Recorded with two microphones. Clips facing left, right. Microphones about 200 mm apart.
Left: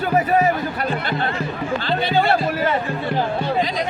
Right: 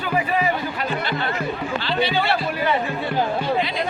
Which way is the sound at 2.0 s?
50° left (ahead or behind).